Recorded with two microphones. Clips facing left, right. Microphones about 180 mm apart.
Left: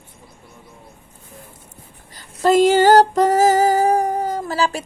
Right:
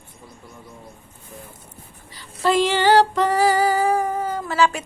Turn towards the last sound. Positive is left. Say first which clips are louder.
# right 1 dB
turn(degrees=35)  # may be behind; listen again after turning